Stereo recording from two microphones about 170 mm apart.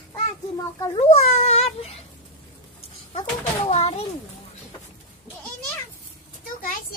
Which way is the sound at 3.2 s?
35° left (ahead or behind).